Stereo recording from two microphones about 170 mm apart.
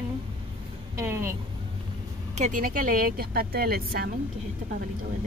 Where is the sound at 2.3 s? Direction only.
45° right (ahead or behind); by 4.1 s 65° right (ahead or behind).